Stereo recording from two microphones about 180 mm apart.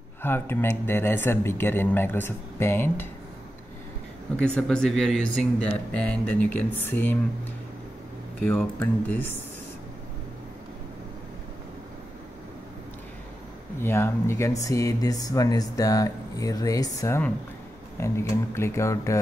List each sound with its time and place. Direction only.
0.2 s speech: 10° left (ahead or behind)
4.6 s speech: 5° left (ahead or behind)
8.4 s speech: 10° left (ahead or behind)
13.7 s speech: 15° left (ahead or behind)